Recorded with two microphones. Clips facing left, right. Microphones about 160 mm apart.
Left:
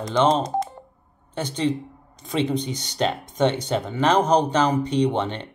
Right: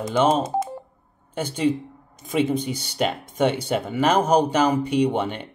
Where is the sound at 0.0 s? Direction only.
5° right (ahead or behind).